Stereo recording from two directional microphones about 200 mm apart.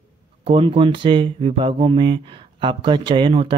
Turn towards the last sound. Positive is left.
turn(degrees=-25)  # may be behind; listen again after turning